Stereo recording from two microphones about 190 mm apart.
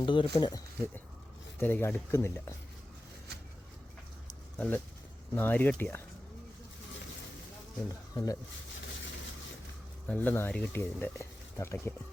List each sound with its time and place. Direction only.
0.0 s speech: 25° left (ahead or behind)
1.5 s speech: 10° left (ahead or behind)
4.5 s speech: 5° left (ahead or behind)
7.9 s speech: 20° left (ahead or behind)
10.1 s speech: 10° left (ahead or behind)